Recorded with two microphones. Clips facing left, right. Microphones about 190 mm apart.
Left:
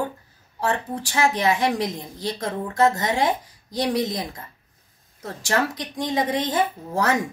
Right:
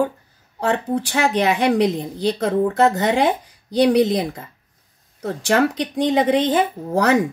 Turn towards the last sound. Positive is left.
turn(degrees=-65)  # may be behind; listen again after turning